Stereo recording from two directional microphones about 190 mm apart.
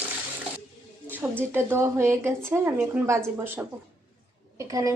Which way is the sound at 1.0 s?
10° right (ahead or behind).